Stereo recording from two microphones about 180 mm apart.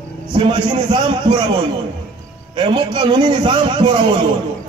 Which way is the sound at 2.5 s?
25° right (ahead or behind).